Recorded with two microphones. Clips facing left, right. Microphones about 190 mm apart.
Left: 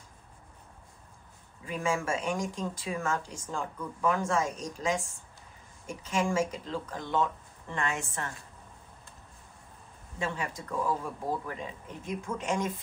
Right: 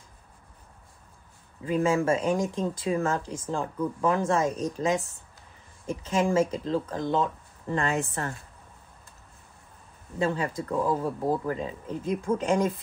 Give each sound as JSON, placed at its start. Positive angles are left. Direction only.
{"t": 1.6, "sound": "speech", "side_deg": -35}
{"t": 4.6, "sound": "a woman's voice", "side_deg": -55}
{"t": 6.5, "sound": "speech", "side_deg": -35}
{"t": 10.1, "sound": "speech", "side_deg": -35}